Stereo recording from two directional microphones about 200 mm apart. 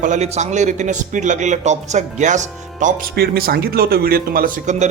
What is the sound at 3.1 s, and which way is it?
A man's voice, 55° right (ahead or behind).